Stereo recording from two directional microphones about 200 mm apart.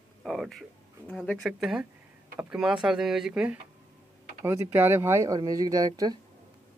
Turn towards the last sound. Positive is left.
turn(degrees=-20)  # may be behind; listen again after turning